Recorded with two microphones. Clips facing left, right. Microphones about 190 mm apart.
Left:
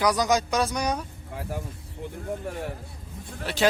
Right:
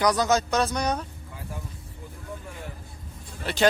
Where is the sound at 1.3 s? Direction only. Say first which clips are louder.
Left 8 dB; 70° left (ahead or behind).